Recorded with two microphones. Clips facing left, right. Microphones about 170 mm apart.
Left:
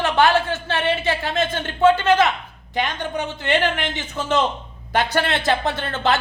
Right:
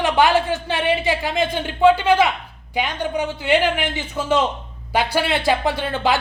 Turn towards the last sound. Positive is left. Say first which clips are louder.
# right 1 dB
turn(degrees=-10)  # may be behind; listen again after turning